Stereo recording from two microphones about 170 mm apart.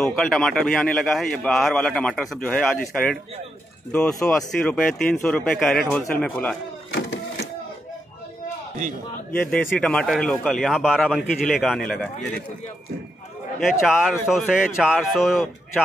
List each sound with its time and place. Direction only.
0.0 s a man's voice: centre (ahead or behind)
4.3 s a man's voice: 5° left (ahead or behind)
6.9 s a sound: 90° left
9.3 s a man's voice: 10° left (ahead or behind)
13.6 s a man's voice: centre (ahead or behind)